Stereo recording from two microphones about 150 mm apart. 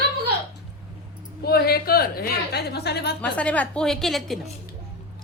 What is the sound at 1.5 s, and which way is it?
A woman's voice, 90° left.